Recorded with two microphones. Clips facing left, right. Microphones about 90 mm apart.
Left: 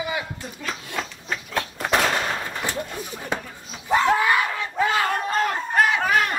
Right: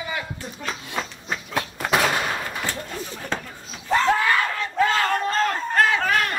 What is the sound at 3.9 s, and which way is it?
Battle cry, 15° left (ahead or behind).